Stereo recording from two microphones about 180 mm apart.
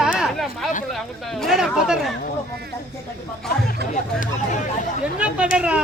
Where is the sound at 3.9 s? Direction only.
45° left (ahead or behind).